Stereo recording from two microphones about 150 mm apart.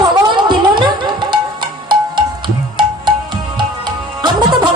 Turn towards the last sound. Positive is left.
turn(degrees=-30)  # may be behind; listen again after turning